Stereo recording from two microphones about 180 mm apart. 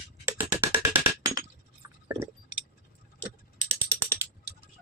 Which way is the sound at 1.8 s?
20° right (ahead or behind).